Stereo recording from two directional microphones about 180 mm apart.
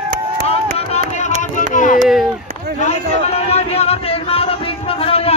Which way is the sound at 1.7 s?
45° left (ahead or behind).